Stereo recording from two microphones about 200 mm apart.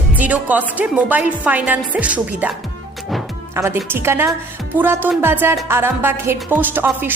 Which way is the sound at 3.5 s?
10° right (ahead or behind).